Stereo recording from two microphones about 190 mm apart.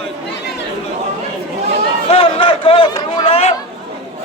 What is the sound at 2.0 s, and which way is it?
Run, 30° left (ahead or behind).